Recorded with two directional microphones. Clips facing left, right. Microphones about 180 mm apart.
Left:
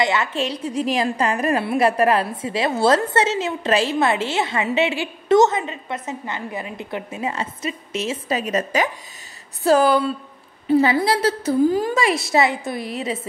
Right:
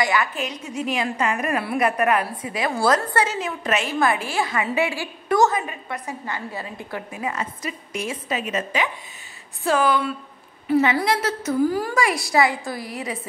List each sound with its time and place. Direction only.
0.0 s a woman's voice: 25° left (ahead or behind)
8.3 s a woman's voice: 40° left (ahead or behind)